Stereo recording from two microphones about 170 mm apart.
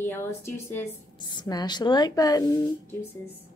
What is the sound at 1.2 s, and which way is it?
A woman's voice, 25° left (ahead or behind).